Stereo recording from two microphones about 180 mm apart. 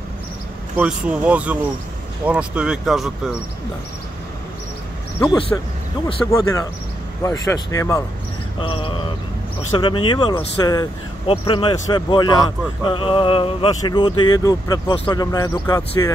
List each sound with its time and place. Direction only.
0.7 s speech: 5° right (ahead or behind)
5.5 s speech: 15° left (ahead or behind)
8.5 s speech: 30° left (ahead or behind)